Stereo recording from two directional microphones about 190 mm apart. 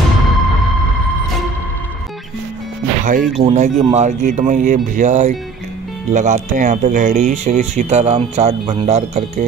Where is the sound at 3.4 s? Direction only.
35° right (ahead or behind).